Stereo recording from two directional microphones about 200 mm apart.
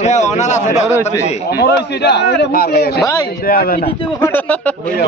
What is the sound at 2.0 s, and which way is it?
A man's voice, 55° left (ahead or behind).